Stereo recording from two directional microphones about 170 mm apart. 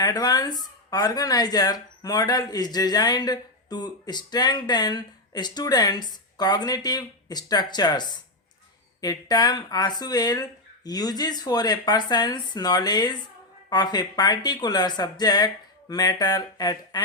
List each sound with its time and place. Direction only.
0.0 s speech: 20° left (ahead or behind)